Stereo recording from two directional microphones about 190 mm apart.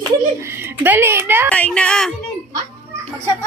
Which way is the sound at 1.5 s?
5° left (ahead or behind).